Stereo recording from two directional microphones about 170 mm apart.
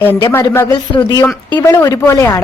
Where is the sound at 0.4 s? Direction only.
20° left (ahead or behind).